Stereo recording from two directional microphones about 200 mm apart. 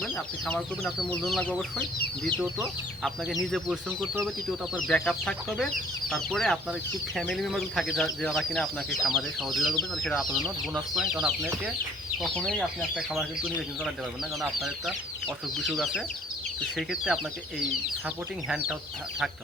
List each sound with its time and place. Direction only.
0.0 s speech: 5° left (ahead or behind)
15.5 s speech: centre (ahead or behind)
18.4 s speech: 5° right (ahead or behind)